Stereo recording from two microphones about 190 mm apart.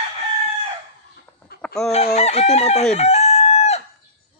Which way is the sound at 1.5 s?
5° left (ahead or behind).